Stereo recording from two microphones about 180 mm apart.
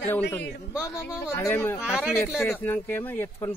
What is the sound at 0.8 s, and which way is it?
A man's voice, 20° left (ahead or behind).